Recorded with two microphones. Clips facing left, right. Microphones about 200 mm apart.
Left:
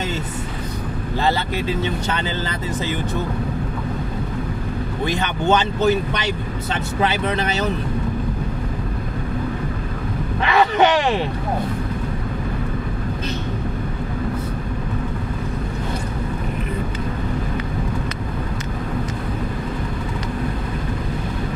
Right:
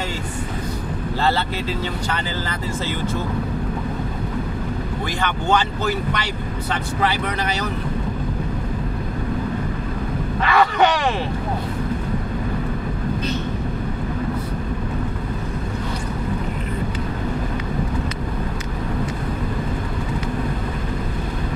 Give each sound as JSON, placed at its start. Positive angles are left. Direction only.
{"t": 5.0, "sound": "speech", "side_deg": 20}
{"t": 10.4, "sound": "speech", "side_deg": 20}